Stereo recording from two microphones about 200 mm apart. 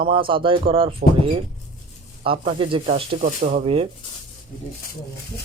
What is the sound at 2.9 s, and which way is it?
Speech, 40° right (ahead or behind).